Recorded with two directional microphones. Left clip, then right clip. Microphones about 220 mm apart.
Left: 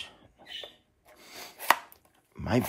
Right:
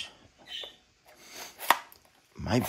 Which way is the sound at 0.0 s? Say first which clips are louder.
Right 2 dB; centre (ahead or behind).